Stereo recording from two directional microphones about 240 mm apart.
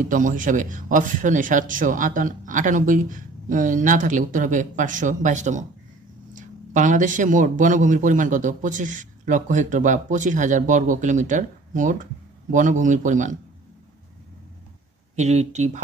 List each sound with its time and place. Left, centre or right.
0.0 s speech: right
15.1 s speech: right